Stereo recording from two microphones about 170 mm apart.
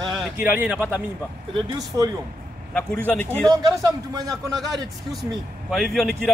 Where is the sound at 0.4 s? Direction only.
10° right (ahead or behind).